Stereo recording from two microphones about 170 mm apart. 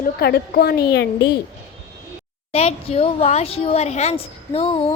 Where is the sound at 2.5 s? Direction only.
35° left (ahead or behind).